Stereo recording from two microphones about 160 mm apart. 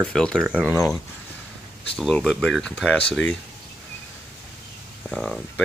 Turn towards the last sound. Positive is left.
turn(degrees=5)  # may be behind; listen again after turning